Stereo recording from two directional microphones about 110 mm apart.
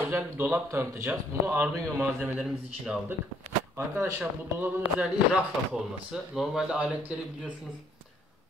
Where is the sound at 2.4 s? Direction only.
5° right (ahead or behind).